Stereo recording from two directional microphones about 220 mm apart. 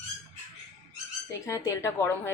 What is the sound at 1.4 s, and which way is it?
Speech, 15° left (ahead or behind).